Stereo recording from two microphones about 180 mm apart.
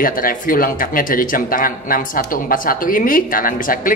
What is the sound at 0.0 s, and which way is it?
Speech, 50° left (ahead or behind).